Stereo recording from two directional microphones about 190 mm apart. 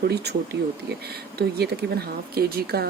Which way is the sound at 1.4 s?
60° right (ahead or behind).